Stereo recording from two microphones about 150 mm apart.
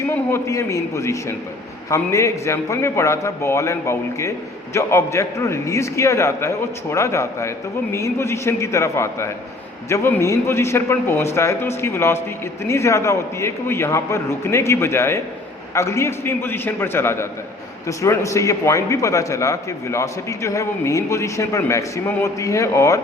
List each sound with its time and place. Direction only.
0.1 s a man's voice: 15° left (ahead or behind)